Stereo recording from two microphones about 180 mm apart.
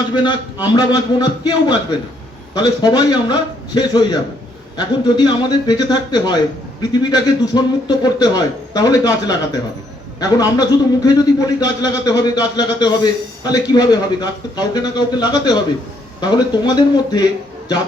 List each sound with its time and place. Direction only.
0.1 s a man's voice: 25° left (ahead or behind)